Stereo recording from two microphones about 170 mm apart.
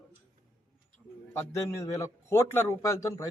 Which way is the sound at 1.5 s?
15° left (ahead or behind).